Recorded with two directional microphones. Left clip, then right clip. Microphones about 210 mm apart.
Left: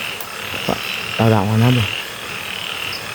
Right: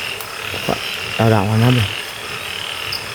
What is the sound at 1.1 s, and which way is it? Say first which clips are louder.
Speech: right 1 dB; 5° right (ahead or behind).